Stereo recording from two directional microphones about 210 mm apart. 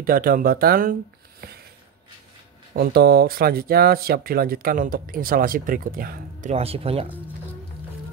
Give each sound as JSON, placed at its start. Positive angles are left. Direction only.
{"t": 0.0, "sound": "speech", "side_deg": -45}
{"t": 2.7, "sound": "speech", "side_deg": -45}
{"t": 6.5, "sound": "speech", "side_deg": -30}